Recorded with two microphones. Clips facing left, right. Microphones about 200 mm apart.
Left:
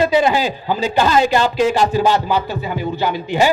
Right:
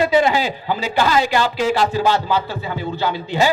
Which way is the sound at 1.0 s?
20° left (ahead or behind).